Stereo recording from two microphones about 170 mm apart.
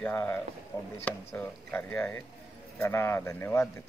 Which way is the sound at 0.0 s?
10° left (ahead or behind).